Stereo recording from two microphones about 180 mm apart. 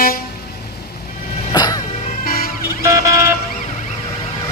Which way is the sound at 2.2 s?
55° left (ahead or behind).